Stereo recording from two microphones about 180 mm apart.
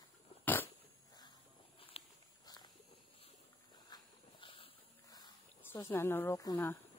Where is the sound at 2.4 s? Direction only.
25° left (ahead or behind).